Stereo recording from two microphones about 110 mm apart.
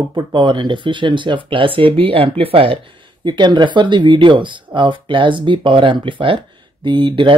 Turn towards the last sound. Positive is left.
turn(degrees=-50)  # may be behind; listen again after turning